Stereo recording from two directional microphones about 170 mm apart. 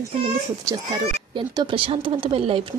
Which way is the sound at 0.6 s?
25° right (ahead or behind).